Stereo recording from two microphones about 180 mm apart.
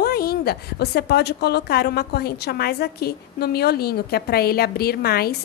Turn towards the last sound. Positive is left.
turn(degrees=60)  # may be behind; listen again after turning